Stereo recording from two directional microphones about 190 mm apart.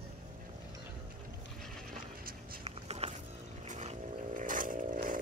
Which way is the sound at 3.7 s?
40° right (ahead or behind).